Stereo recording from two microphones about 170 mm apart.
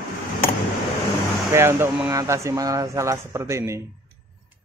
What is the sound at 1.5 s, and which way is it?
Speech, 15° right (ahead or behind).